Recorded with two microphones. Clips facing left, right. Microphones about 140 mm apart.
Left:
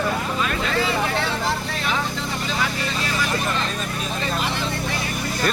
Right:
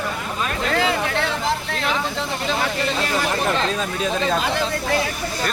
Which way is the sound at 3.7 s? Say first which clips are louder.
Right 5 dB; 90° right.